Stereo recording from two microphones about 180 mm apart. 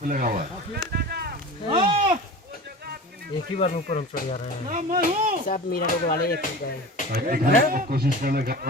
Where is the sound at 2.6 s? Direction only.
60° right (ahead or behind).